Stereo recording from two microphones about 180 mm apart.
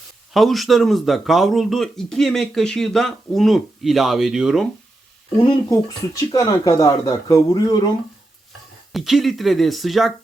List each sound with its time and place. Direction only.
0.3 s speech: centre (ahead or behind)
5.4 s speech: 20° left (ahead or behind)
8.9 s speech: centre (ahead or behind)